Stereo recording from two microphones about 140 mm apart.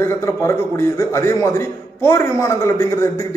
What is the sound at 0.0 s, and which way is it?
A man's voice, 20° left (ahead or behind).